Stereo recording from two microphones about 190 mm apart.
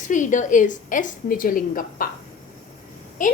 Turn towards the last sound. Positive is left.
turn(degrees=45)  # may be behind; listen again after turning